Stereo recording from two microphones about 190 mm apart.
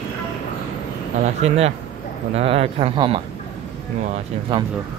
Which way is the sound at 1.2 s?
35° right (ahead or behind).